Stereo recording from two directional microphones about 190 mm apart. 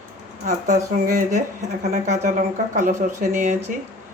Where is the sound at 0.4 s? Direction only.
45° right (ahead or behind).